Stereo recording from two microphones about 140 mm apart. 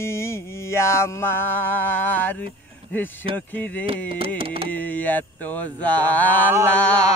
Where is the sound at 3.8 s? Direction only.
40° right (ahead or behind).